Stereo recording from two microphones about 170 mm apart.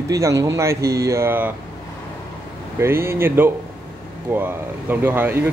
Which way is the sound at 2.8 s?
15° right (ahead or behind).